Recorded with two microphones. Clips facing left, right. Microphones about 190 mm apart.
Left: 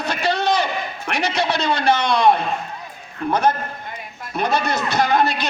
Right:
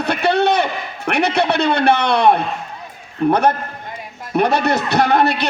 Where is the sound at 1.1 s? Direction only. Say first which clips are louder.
Right 5 dB; 60° right (ahead or behind).